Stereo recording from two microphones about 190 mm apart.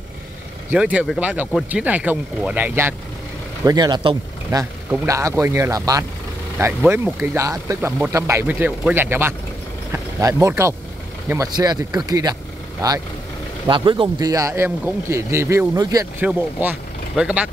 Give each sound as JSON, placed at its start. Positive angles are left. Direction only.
{"t": 0.7, "sound": "speech", "side_deg": -5}
{"t": 3.6, "sound": "speech", "side_deg": -20}
{"t": 13.7, "sound": "speech", "side_deg": -25}
{"t": 16.3, "sound": "speech", "side_deg": -5}